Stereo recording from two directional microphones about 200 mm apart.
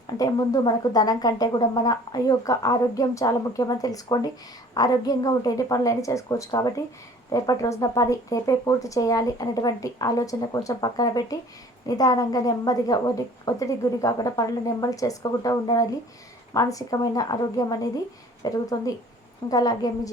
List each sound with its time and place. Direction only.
0.1 s speech: 20° left (ahead or behind)